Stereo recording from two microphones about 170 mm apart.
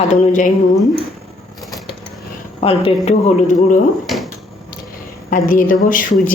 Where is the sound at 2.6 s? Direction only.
35° left (ahead or behind).